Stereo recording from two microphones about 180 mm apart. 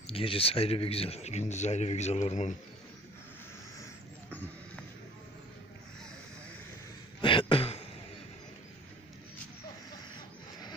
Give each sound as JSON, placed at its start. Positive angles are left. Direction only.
{"t": 0.0, "sound": "speech", "side_deg": 30}
{"t": 7.2, "sound": "throat clearing", "side_deg": 30}